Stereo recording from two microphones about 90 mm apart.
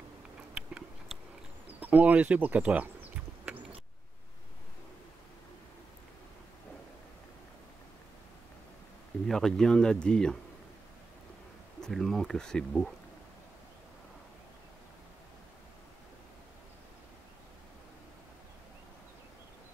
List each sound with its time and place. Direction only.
0.6 s tick-tock: 10° right (ahead or behind)
1.8 s a sound: 15° right (ahead or behind)
9.3 s speech: 5° left (ahead or behind)
11.8 s speech: 5° left (ahead or behind)